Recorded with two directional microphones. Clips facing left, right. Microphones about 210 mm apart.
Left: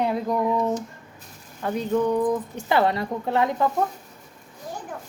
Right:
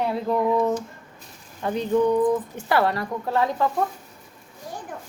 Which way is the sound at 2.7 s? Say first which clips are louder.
Left 1 dB; 20° left (ahead or behind).